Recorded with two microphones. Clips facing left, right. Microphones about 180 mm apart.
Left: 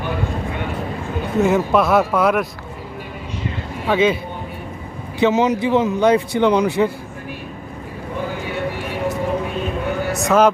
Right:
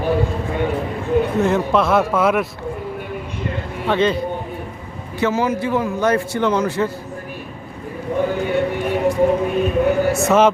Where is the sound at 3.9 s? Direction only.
5° left (ahead or behind).